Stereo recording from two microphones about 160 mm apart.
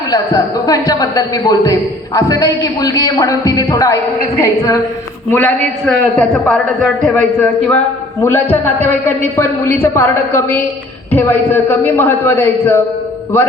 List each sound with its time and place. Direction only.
0.1 s a man's voice: 25° left (ahead or behind)
5.3 s a man's voice: 5° left (ahead or behind)